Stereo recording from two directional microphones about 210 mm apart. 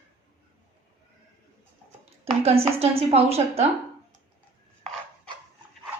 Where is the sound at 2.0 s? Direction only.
30° right (ahead or behind).